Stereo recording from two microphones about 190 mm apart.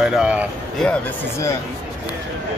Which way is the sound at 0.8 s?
10° left (ahead or behind).